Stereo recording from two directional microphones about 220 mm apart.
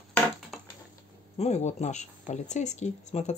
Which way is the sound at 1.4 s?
30° left (ahead or behind).